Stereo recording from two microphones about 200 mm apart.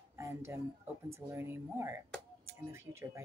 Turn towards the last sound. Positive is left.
turn(degrees=-15)  # may be behind; listen again after turning